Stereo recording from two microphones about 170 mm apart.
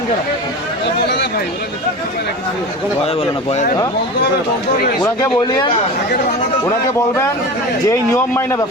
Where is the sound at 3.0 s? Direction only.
35° left (ahead or behind).